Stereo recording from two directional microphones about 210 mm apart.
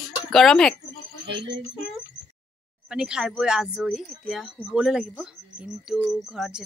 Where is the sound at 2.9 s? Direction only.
5° right (ahead or behind).